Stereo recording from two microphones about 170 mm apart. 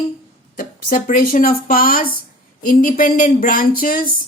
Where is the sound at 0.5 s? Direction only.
60° left (ahead or behind).